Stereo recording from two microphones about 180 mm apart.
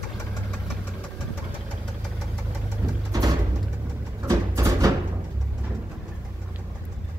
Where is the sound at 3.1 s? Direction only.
20° right (ahead or behind).